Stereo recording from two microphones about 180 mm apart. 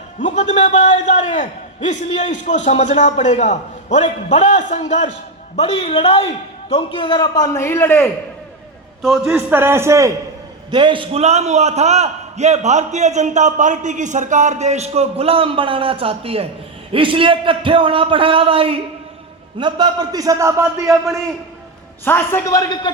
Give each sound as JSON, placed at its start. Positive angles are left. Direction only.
{"t": 0.2, "sound": "a man's voice", "side_deg": 40}
{"t": 9.0, "sound": "a man's voice", "side_deg": 0}
{"t": 9.2, "sound": "speech", "side_deg": -10}
{"t": 10.7, "sound": "a man's voice", "side_deg": -25}
{"t": 20.8, "sound": "a man's voice", "side_deg": 0}
{"t": 22.0, "sound": "a man's voice", "side_deg": 10}